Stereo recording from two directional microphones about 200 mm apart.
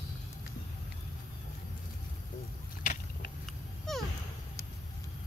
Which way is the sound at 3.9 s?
Centre (ahead or behind).